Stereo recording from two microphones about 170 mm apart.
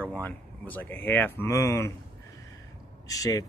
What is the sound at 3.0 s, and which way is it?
Speech, 20° left (ahead or behind).